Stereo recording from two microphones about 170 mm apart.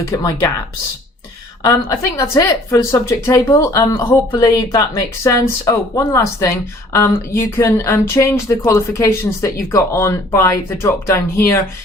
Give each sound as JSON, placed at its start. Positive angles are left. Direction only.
{"t": 1.6, "sound": "speech", "side_deg": 20}